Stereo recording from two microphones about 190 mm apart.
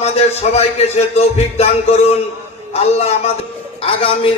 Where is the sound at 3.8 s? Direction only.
30° left (ahead or behind).